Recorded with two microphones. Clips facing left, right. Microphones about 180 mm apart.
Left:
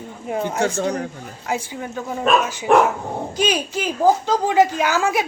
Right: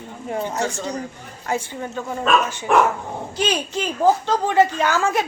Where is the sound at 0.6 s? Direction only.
60° left (ahead or behind).